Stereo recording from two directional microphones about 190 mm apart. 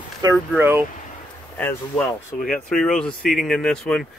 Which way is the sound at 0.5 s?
10° right (ahead or behind).